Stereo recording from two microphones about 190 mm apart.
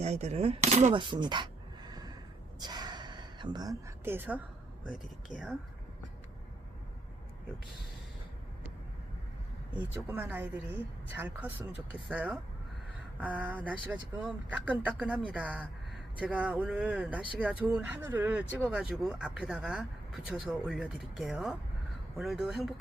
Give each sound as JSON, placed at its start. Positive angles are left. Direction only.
{"t": 0.0, "sound": "speech", "side_deg": -35}
{"t": 0.9, "sound": "a sound", "side_deg": -25}
{"t": 2.6, "sound": "gasp", "side_deg": -20}
{"t": 9.7, "sound": "speech", "side_deg": -10}